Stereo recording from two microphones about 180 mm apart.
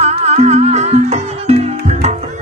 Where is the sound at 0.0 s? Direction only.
35° right (ahead or behind).